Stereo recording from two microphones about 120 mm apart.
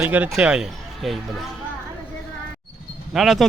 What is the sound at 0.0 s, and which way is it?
Speech, 15° right (ahead or behind).